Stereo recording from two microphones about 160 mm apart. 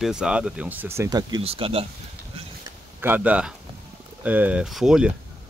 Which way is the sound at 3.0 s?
10° right (ahead or behind).